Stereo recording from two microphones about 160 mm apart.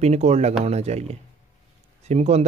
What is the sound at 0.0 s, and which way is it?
Speech, 45° right (ahead or behind).